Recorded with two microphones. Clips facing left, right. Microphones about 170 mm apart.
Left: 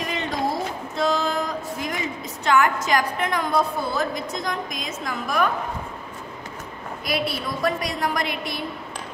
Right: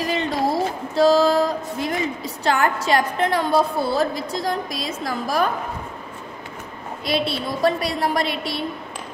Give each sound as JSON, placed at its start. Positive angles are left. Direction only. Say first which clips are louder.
{"t": 0.0, "sound": "a sound", "louder": "right 5 dB", "side_deg": -35}
{"t": 0.9, "sound": "a woman's voice", "louder": "right 8 dB", "side_deg": -35}
{"t": 7.1, "sound": "a woman's voice", "louder": "right 3 dB", "side_deg": -25}